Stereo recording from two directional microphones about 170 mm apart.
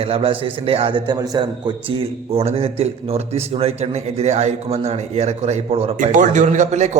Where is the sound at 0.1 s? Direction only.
35° right (ahead or behind).